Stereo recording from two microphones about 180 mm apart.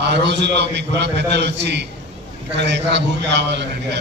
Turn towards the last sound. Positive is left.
turn(degrees=-70)  # may be behind; listen again after turning